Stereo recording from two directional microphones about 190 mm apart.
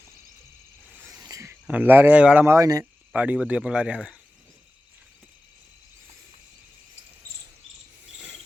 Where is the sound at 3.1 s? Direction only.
5° right (ahead or behind).